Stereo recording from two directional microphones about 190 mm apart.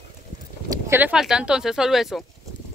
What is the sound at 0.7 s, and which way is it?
Speech, 10° right (ahead or behind).